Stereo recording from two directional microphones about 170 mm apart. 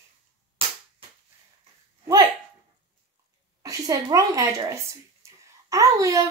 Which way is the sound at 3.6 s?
20° right (ahead or behind).